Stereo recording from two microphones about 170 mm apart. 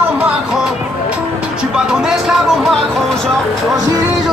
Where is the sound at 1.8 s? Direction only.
5° right (ahead or behind).